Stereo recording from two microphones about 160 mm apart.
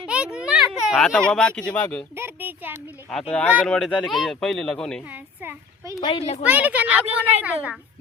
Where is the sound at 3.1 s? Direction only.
5° left (ahead or behind).